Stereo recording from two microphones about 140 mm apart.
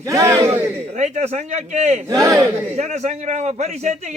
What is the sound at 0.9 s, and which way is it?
A man's voice, 55° right (ahead or behind).